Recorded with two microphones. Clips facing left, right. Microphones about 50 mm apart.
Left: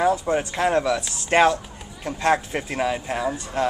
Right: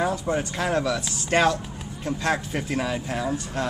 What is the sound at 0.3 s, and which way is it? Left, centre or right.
Speech, left.